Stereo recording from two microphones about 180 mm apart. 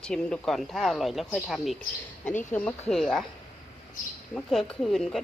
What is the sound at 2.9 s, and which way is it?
Speech, centre (ahead or behind).